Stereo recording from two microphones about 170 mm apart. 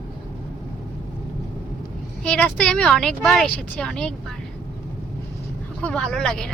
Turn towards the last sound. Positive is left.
turn(degrees=5)  # may be behind; listen again after turning